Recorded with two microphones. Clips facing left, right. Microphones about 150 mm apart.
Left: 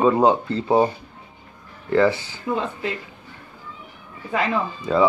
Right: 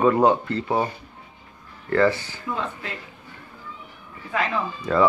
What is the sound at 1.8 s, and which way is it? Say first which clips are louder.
Speech: left 2 dB; 10° left (ahead or behind).